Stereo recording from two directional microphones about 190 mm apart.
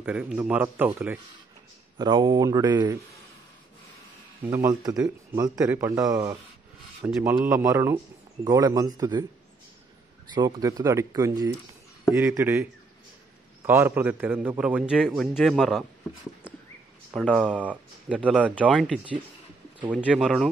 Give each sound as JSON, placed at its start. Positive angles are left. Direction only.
{"t": 0.0, "sound": "a man's voice", "side_deg": -5}
{"t": 2.0, "sound": "speech", "side_deg": -25}
{"t": 4.5, "sound": "a man's voice", "side_deg": -15}
{"t": 10.3, "sound": "a man's voice", "side_deg": -20}
{"t": 17.1, "sound": "speech", "side_deg": 0}
{"t": 18.1, "sound": "a man's voice", "side_deg": -5}
{"t": 18.5, "sound": "speech", "side_deg": 5}
{"t": 19.9, "sound": "speech", "side_deg": -5}